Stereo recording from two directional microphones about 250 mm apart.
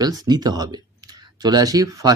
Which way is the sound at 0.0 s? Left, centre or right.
Centre.